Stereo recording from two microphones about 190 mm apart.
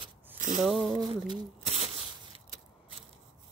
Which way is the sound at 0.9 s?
25° right (ahead or behind).